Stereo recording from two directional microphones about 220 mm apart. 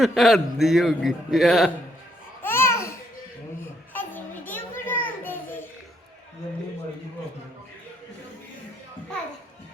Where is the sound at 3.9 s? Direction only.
10° left (ahead or behind).